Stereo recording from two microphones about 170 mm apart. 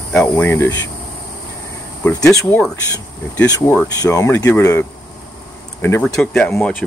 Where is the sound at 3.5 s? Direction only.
15° left (ahead or behind).